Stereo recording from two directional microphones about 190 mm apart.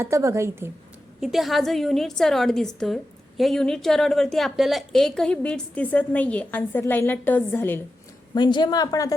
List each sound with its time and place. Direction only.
0.0 s a woman's voice: 15° right (ahead or behind)
1.2 s a woman's voice: centre (ahead or behind)
8.4 s speech: 25° left (ahead or behind)